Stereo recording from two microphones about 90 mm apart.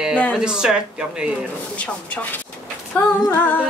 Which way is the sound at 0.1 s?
15° left (ahead or behind).